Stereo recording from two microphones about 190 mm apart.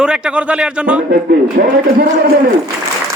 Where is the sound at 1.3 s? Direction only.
50° right (ahead or behind).